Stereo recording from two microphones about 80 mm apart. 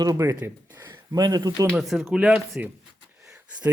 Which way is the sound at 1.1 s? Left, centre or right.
Right.